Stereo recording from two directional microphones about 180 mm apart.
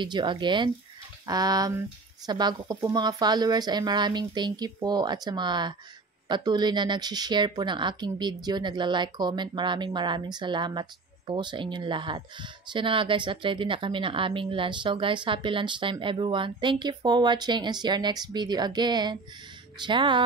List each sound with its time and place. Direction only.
0.0 s speech: 25° right (ahead or behind)